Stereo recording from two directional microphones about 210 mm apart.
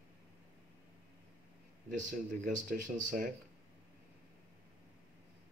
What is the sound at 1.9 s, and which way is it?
Speech, 40° right (ahead or behind).